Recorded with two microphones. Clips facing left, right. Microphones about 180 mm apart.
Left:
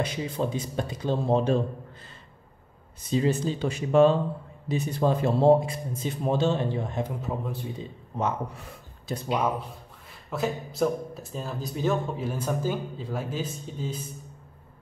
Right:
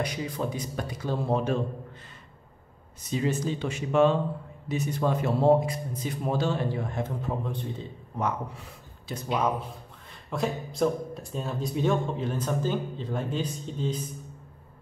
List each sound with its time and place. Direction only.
0.0 s speech: 25° left (ahead or behind)
3.1 s speech: 30° left (ahead or behind)
7.2 s speech: 5° left (ahead or behind)
8.1 s speech: 25° left (ahead or behind)
10.3 s speech: 5° left (ahead or behind)